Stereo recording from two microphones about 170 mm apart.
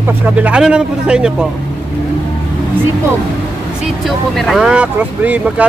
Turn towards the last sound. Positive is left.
turn(degrees=-10)  # may be behind; listen again after turning